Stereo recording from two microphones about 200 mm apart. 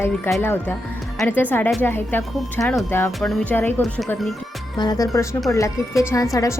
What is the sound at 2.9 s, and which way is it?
Speech, 10° left (ahead or behind).